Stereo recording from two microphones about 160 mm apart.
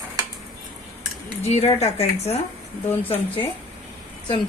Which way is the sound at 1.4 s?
45° left (ahead or behind).